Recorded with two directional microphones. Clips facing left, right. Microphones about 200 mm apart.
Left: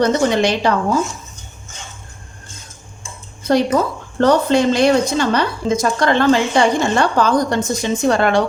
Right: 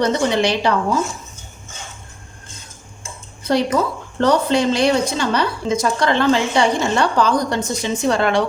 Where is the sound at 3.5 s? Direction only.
50° left (ahead or behind).